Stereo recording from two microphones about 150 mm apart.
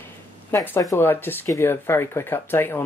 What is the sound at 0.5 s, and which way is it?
Speech, 15° left (ahead or behind).